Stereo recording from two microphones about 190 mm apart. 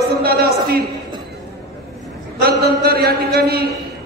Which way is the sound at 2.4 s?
55° right (ahead or behind).